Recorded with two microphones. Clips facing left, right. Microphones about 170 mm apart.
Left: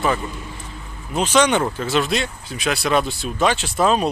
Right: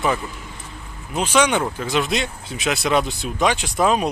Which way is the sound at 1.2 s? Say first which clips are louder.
Left 1 dB; 10° right (ahead or behind).